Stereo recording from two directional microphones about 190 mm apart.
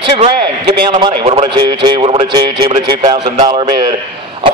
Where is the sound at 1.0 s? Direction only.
30° right (ahead or behind).